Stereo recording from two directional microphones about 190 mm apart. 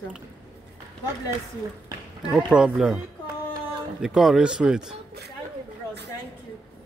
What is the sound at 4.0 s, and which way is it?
Speech, 5° right (ahead or behind).